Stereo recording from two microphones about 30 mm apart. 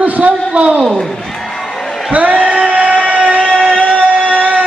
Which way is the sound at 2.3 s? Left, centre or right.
Right.